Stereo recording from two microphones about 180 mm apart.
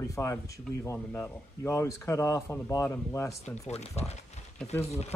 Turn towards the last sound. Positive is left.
turn(degrees=35)  # may be behind; listen again after turning